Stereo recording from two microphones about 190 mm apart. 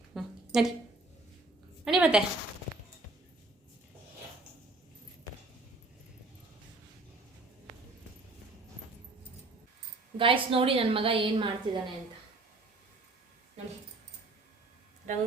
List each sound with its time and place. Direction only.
0.1 s a sound: centre (ahead or behind)
1.8 s a woman's voice: 5° right (ahead or behind)
10.2 s a woman's voice: 30° right (ahead or behind)